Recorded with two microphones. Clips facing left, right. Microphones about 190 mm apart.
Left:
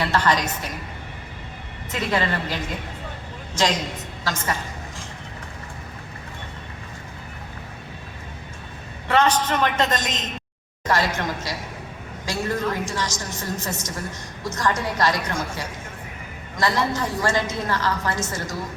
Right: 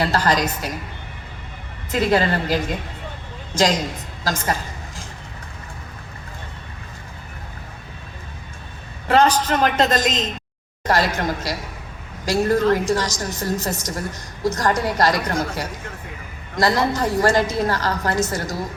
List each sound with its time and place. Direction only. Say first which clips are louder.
0.0 s a woman's voice: right 2 dB; 35° right (ahead or behind)
1.9 s a woman's voice: right 5 dB; 35° right (ahead or behind)
4.2 s a woman's voice: right 4 dB; 40° right (ahead or behind)
9.0 s a woman's voice: right 3 dB; 35° right (ahead or behind)